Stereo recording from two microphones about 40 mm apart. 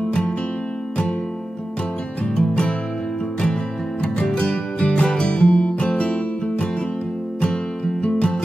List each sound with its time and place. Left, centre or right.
2.4 s music: left
4.0 s music: left
4.7 s music: left
7.4 s music: left